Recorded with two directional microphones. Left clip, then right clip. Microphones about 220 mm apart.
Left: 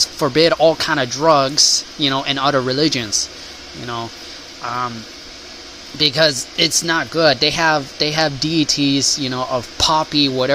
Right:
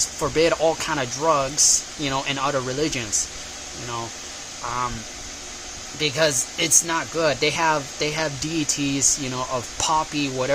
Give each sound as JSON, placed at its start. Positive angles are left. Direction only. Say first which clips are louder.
{"t": 0.2, "sound": "speech", "louder": "left 6 dB", "side_deg": 20}
{"t": 6.0, "sound": "speech", "louder": "left 6 dB", "side_deg": 20}